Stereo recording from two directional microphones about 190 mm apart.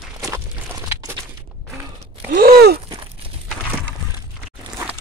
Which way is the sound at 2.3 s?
50° right (ahead or behind).